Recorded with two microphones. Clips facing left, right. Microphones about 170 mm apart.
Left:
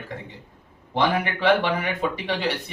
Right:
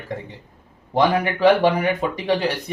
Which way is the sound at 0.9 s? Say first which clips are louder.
Right 4 dB; 40° right (ahead or behind).